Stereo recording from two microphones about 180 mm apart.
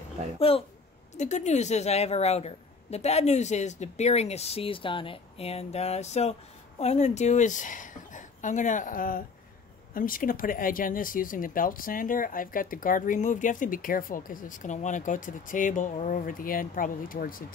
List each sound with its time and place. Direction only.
0.4 s a woman's voice: 30° left (ahead or behind); by 17.5 s 50° left (ahead or behind)